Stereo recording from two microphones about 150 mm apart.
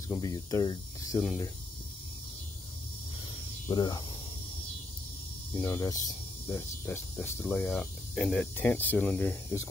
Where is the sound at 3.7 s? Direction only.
30° left (ahead or behind).